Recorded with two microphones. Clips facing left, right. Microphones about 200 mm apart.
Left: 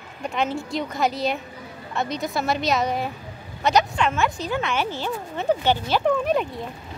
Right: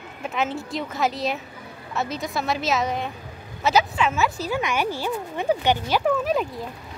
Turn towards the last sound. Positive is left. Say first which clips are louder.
# left 1 dB
turn(degrees=0)  # may be behind; listen again after turning